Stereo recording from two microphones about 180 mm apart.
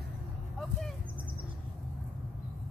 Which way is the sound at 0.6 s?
Centre (ahead or behind).